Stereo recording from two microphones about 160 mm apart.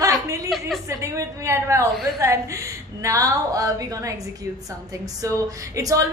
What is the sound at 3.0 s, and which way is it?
A woman's voice, 20° right (ahead or behind).